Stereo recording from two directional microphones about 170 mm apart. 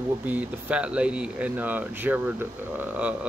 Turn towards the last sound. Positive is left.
turn(degrees=-10)  # may be behind; listen again after turning